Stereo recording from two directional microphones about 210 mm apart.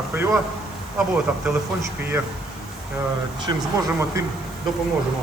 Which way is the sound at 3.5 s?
20° right (ahead or behind).